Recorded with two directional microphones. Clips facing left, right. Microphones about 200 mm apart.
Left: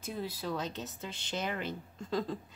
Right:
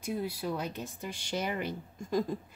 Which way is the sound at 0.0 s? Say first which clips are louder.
Right 4 dB; 15° right (ahead or behind).